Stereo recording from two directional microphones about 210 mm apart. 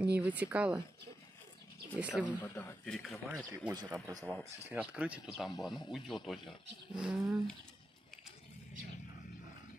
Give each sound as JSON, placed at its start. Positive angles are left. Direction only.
{"t": 0.0, "sound": "speech", "side_deg": -5}
{"t": 2.0, "sound": "speech", "side_deg": -5}
{"t": 2.2, "sound": "speech", "side_deg": 10}
{"t": 3.7, "sound": "speech", "side_deg": -15}
{"t": 4.3, "sound": "speech", "side_deg": -5}